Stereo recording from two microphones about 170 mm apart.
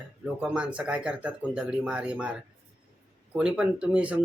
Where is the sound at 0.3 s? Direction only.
5° right (ahead or behind).